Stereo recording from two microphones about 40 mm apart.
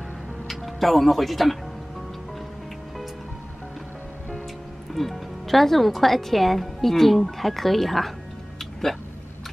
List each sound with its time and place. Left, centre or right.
0.5 s speech: centre
4.9 s speech: centre